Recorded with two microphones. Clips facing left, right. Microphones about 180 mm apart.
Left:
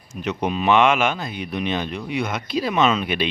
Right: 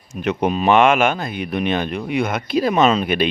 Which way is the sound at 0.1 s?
55° right (ahead or behind).